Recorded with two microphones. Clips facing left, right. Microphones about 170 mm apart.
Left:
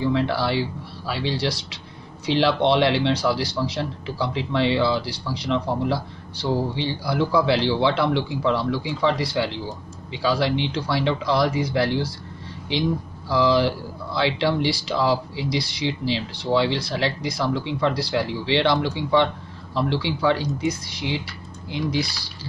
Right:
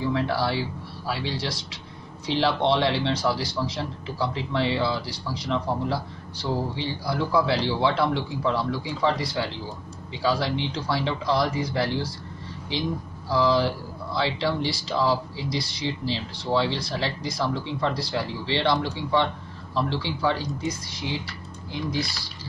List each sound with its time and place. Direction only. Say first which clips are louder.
0.0 s speech: left 3 dB; 75° left (ahead or behind)
13.3 s speech: left 3 dB; 75° left (ahead or behind)